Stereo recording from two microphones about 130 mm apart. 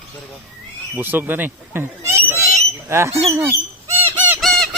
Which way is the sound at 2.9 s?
20° right (ahead or behind).